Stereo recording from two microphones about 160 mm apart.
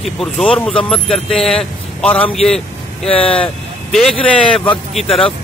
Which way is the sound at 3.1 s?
35° left (ahead or behind).